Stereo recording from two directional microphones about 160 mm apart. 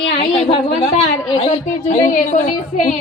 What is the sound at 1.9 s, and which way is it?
A woman's voice, 50° left (ahead or behind).